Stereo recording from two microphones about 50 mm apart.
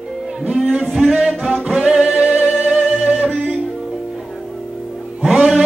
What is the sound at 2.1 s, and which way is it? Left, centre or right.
Music, right.